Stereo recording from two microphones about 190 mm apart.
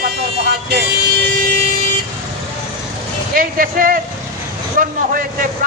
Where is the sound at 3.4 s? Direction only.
50° right (ahead or behind).